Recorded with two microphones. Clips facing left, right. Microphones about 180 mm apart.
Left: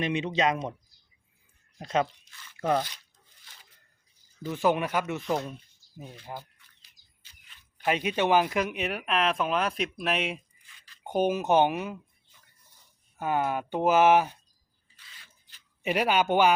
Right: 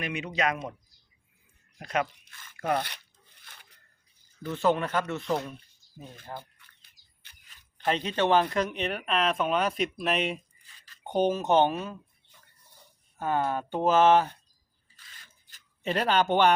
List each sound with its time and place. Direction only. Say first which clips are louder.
0.0 s speech: left 3 dB; 25° left (ahead or behind)
1.8 s speech: left 2 dB; 25° left (ahead or behind)
2.2 s tearing: even; 50° right (ahead or behind)
2.8 s a sound: even; 65° right (ahead or behind)
4.4 s speech: even; 10° left (ahead or behind)
6.4 s chicken: right 2 dB; 55° right (ahead or behind)
7.3 s a sound: right 2 dB; 60° right (ahead or behind)
7.9 s speech: even; 10° left (ahead or behind)
10.7 s a sound: even; 40° right (ahead or behind)
11.0 s speech: even; 5° left (ahead or behind)
13.1 s speech: even; 10° left (ahead or behind)
14.9 s drip: even; 45° right (ahead or behind)
15.8 s speech: even; 10° left (ahead or behind)